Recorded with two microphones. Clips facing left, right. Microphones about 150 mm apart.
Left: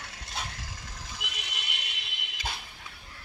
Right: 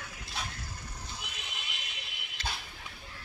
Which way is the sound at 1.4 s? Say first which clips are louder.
Left 3 dB; 75° left (ahead or behind).